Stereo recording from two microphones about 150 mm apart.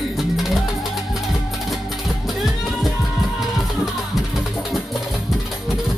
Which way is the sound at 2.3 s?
Centre (ahead or behind).